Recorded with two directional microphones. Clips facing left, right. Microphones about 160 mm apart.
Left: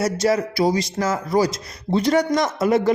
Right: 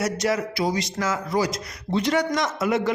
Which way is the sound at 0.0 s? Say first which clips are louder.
Left 4 dB; 30° left (ahead or behind).